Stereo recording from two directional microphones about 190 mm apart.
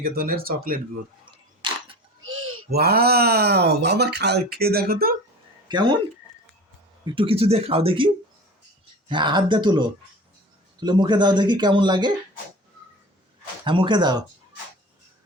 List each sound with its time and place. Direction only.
0.0 s speech: 50° right (ahead or behind)
2.2 s a sound: 90° right
2.6 s speech: 55° right (ahead or behind)
5.6 s speech: 25° right (ahead or behind)
7.0 s speech: 25° right (ahead or behind)
13.7 s speech: 25° right (ahead or behind)